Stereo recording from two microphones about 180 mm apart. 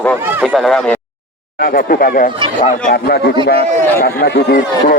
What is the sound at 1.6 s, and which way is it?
Speech, 55° left (ahead or behind).